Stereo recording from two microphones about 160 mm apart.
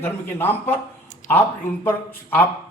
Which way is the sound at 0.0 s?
15° left (ahead or behind).